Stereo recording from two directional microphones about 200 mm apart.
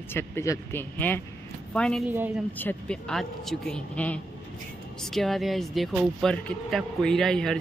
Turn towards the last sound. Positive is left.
turn(degrees=5)  # may be behind; listen again after turning